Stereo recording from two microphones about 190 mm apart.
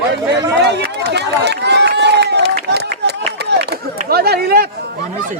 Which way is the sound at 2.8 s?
60° right (ahead or behind).